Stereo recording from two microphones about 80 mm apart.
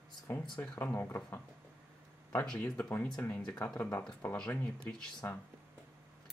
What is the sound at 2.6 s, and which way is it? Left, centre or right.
Speech, left.